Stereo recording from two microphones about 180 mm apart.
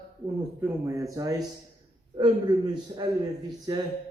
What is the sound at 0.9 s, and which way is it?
A man's voice, 20° right (ahead or behind).